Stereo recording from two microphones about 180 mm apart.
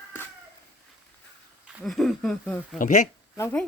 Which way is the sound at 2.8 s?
40° left (ahead or behind).